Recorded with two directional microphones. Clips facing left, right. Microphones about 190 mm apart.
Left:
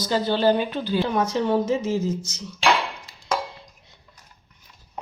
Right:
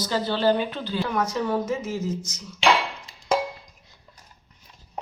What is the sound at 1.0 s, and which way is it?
Speech, 25° left (ahead or behind).